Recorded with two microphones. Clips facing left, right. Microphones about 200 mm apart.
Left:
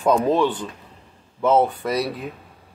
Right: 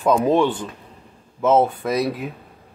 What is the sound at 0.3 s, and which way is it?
Speech, 15° right (ahead or behind).